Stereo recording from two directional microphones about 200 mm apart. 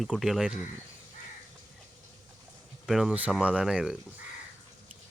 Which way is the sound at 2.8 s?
Centre (ahead or behind).